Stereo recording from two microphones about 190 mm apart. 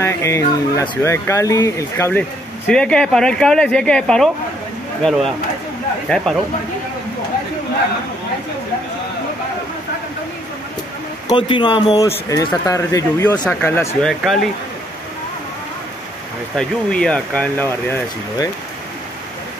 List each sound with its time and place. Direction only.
0.0 s speech: 15° left (ahead or behind)
11.2 s speech: 25° left (ahead or behind)
16.5 s speech: 5° left (ahead or behind)